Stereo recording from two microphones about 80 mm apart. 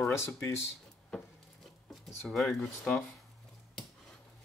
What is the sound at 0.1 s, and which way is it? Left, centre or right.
Speech, left.